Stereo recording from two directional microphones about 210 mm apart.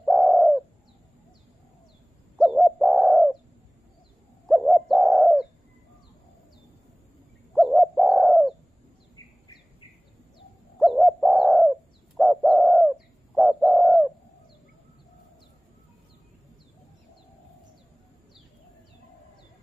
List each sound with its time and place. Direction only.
0.0 s bird: centre (ahead or behind)
2.3 s bird: centre (ahead or behind)
4.5 s bird: centre (ahead or behind)
7.5 s bird: centre (ahead or behind)
9.1 s bird: 20° left (ahead or behind)
10.8 s bird: centre (ahead or behind)